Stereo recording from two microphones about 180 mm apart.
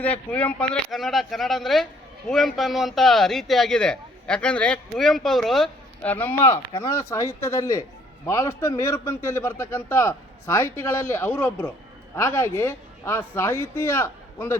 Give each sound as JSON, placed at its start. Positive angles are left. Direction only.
{"t": 0.0, "sound": "a man's voice", "side_deg": 10}
{"t": 6.6, "sound": "speech", "side_deg": 25}
{"t": 6.9, "sound": "a man's voice", "side_deg": 15}